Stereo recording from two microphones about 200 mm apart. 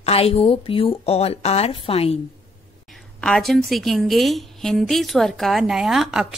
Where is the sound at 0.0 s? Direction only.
30° left (ahead or behind).